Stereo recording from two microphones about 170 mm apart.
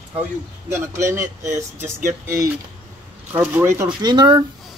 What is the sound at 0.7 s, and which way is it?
Speech, 15° right (ahead or behind).